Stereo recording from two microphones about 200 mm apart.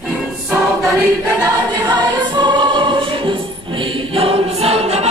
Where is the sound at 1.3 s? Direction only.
20° right (ahead or behind).